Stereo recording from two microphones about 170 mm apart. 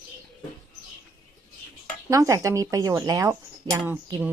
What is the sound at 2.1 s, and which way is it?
Speech, 20° right (ahead or behind).